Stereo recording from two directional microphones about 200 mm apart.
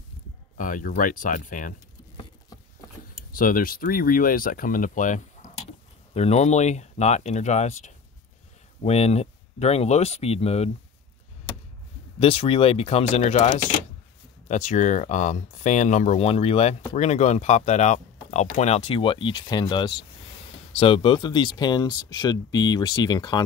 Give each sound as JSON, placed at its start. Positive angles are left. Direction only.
{"t": 0.6, "sound": "speech", "side_deg": 40}
{"t": 3.3, "sound": "speech", "side_deg": 45}
{"t": 12.2, "sound": "speech", "side_deg": 30}